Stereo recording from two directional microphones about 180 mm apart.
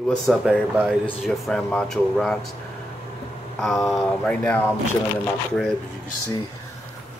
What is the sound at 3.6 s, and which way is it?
Speech, centre (ahead or behind).